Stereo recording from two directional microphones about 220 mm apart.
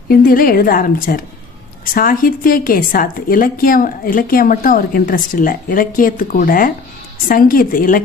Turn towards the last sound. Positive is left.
turn(degrees=40)  # may be behind; listen again after turning